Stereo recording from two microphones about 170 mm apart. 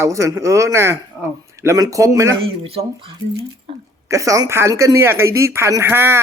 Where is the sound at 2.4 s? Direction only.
35° right (ahead or behind).